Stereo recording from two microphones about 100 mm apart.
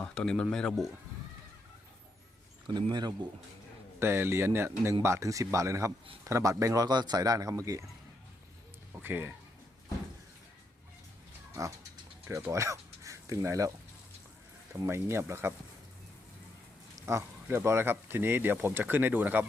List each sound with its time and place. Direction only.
0.0 s speech: 10° left (ahead or behind)
2.6 s speech: 50° right (ahead or behind)
4.0 s a man's voice: 25° right (ahead or behind)
9.0 s speech: 20° right (ahead or behind)
11.5 s a man's voice: 35° right (ahead or behind)
14.8 s speech: 25° right (ahead or behind)
17.1 s speech: 25° right (ahead or behind)